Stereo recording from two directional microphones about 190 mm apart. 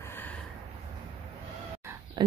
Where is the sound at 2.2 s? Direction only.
25° right (ahead or behind).